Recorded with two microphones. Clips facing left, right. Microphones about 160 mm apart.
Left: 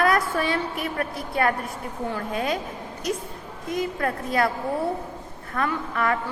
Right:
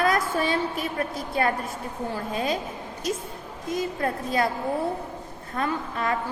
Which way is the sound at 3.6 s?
25° right (ahead or behind).